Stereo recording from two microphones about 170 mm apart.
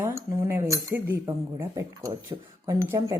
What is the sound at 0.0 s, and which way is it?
Speech, 15° right (ahead or behind).